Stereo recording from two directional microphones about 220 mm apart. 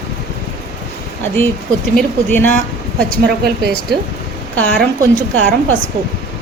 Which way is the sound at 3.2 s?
45° right (ahead or behind).